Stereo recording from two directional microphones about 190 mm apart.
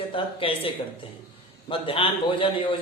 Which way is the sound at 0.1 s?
30° left (ahead or behind).